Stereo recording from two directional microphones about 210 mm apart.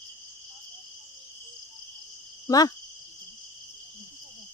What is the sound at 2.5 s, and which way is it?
Speech, 15° left (ahead or behind).